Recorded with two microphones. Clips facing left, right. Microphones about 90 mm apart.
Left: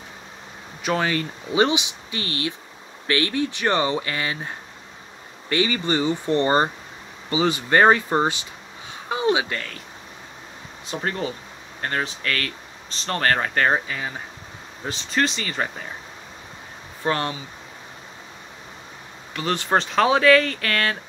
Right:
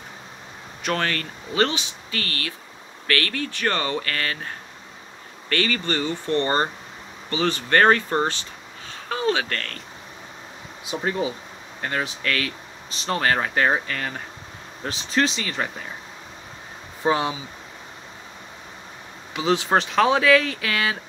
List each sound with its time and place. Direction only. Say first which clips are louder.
0.8 s speech: left 2 dB; 10° left (ahead or behind)
11.1 s speech: right 2 dB; 10° right (ahead or behind)
13.8 s speech: right 1 dB; 10° left (ahead or behind)
14.9 s speech: right 1 dB; centre (ahead or behind)
17.0 s speech: right 2 dB; 10° right (ahead or behind)
19.3 s speech: right 2 dB; 5° right (ahead or behind)